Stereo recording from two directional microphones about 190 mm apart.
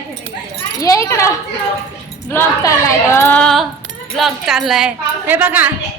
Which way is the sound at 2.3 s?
15° left (ahead or behind).